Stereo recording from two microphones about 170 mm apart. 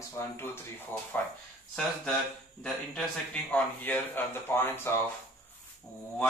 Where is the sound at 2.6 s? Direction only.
5° left (ahead or behind).